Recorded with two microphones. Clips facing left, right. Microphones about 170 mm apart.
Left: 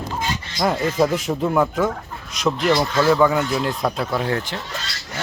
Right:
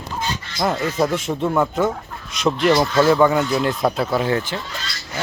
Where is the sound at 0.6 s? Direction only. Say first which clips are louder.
Left 1 dB; centre (ahead or behind).